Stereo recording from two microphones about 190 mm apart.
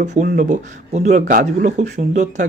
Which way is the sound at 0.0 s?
40° right (ahead or behind).